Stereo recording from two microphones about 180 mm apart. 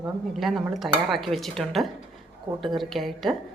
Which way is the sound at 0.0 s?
Centre (ahead or behind).